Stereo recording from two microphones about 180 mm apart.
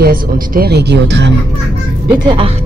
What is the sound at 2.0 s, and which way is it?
Speech, 25° right (ahead or behind).